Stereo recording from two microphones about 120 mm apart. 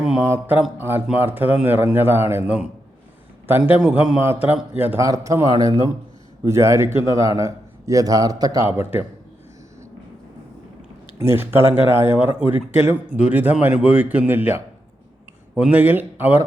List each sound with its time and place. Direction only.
0.2 s speech: 15° right (ahead or behind)
3.7 s speech: 10° right (ahead or behind)
4.2 s speech: 15° right (ahead or behind)
4.9 s a man's voice: 25° right (ahead or behind)
11.2 s speech: 20° right (ahead or behind)